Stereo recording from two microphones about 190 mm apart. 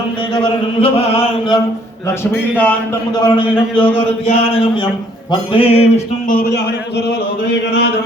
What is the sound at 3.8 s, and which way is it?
Speech, 30° left (ahead or behind).